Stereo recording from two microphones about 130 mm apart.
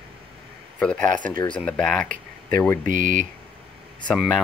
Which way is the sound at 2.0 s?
90° right.